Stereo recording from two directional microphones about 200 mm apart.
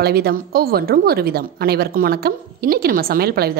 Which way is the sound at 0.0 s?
50° right (ahead or behind).